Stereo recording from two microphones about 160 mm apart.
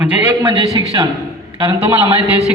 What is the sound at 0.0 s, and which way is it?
Speech, 10° right (ahead or behind).